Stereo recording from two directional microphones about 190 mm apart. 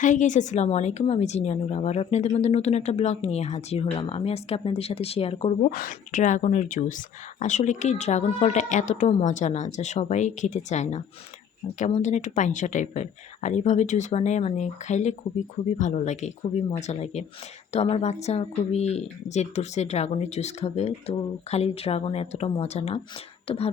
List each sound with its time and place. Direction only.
0.0 s a woman's voice: 40° left (ahead or behind)
5.7 s a woman's voice: 45° left (ahead or behind)